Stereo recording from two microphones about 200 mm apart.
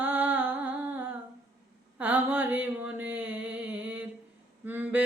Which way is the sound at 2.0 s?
10° right (ahead or behind).